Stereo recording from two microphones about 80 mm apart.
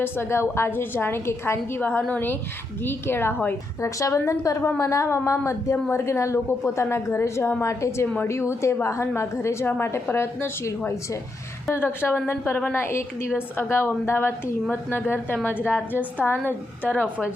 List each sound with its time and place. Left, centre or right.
0.0 s a woman's voice: left
3.8 s a woman's voice: left